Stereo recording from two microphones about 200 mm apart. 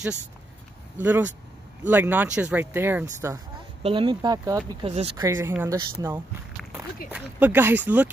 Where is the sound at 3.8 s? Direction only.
25° right (ahead or behind).